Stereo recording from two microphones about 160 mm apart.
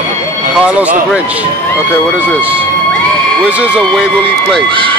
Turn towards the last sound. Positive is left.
turn(degrees=-10)  # may be behind; listen again after turning